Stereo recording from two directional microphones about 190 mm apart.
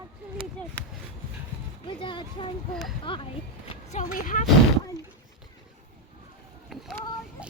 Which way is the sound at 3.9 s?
40° left (ahead or behind).